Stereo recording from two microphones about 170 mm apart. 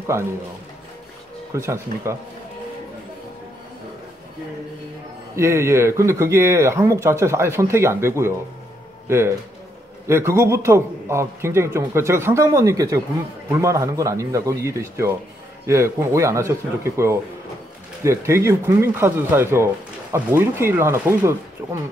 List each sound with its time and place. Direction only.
0.0 s speech: 15° right (ahead or behind)
1.5 s speech: 15° right (ahead or behind)
5.3 s speech: 15° right (ahead or behind)